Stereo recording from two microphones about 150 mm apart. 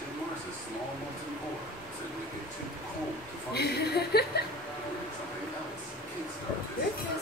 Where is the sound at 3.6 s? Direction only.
90° left.